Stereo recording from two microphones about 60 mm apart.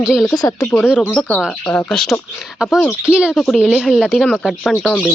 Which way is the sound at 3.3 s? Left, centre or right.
Centre.